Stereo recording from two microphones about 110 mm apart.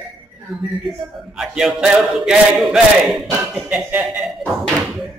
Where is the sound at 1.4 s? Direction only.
5° right (ahead or behind).